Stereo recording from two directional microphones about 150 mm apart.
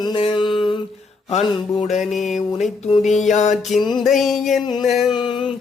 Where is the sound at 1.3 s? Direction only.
45° left (ahead or behind).